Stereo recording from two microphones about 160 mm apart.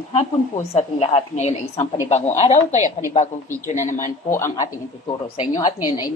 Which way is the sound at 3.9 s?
55° left (ahead or behind).